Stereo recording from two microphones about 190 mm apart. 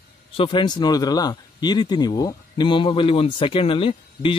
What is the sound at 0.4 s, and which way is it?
Speech, 25° left (ahead or behind).